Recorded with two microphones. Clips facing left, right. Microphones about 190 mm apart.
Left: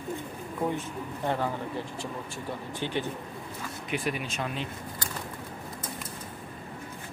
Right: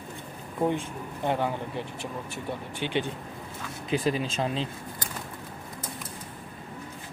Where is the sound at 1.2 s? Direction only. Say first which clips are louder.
Right 2 dB; 15° right (ahead or behind).